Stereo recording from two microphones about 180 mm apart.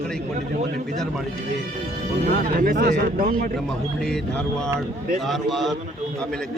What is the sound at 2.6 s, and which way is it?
Speech, 50° right (ahead or behind).